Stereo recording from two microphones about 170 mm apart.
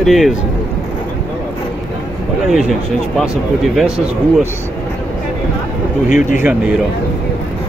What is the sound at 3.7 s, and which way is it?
Speech, 5° right (ahead or behind).